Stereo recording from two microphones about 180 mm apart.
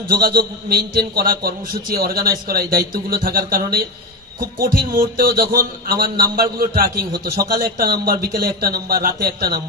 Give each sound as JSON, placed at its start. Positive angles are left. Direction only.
{"t": 0.1, "sound": "a man's voice", "side_deg": -60}